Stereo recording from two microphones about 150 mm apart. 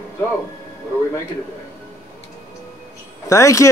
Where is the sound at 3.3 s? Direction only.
20° left (ahead or behind).